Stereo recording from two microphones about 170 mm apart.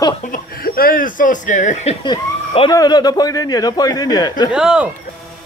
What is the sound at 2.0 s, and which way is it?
A man's voice, 30° left (ahead or behind).